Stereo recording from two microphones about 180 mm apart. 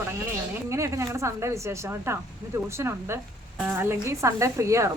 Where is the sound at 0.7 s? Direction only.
15° right (ahead or behind).